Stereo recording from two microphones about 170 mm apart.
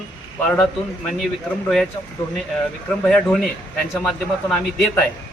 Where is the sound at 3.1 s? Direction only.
5° left (ahead or behind).